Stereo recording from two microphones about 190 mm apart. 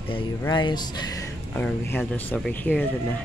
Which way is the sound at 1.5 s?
10° left (ahead or behind).